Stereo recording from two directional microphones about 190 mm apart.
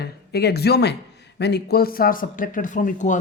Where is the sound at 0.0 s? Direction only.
60° left (ahead or behind).